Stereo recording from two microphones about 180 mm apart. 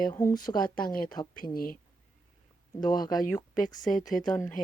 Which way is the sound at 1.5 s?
55° left (ahead or behind).